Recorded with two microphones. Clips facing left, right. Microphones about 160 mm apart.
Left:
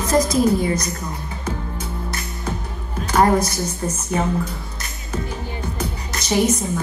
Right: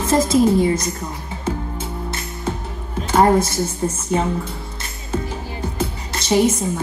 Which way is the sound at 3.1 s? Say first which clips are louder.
Right 2 dB; 25° right (ahead or behind).